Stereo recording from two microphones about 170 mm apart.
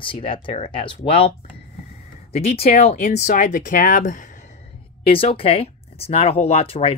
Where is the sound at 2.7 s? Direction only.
60° left (ahead or behind).